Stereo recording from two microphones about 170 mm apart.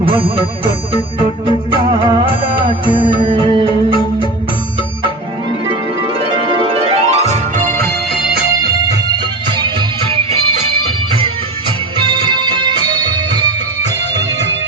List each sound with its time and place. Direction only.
0.0 s music: 30° right (ahead or behind)
6.1 s music: 35° right (ahead or behind); by 7.9 s 50° right (ahead or behind)
7.9 s music: centre (ahead or behind)
10.2 s music: 40° right (ahead or behind)
11.9 s music: 25° right (ahead or behind)
14.3 s music: 90° right